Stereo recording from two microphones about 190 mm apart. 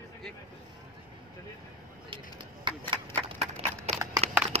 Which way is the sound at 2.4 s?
25° right (ahead or behind).